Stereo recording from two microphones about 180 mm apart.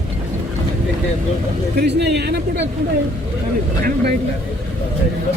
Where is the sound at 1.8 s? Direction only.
65° right (ahead or behind).